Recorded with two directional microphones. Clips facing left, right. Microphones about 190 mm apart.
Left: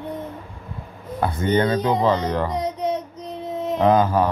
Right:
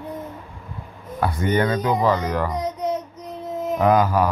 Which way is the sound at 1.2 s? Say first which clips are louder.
Left 1 dB; 25° left (ahead or behind).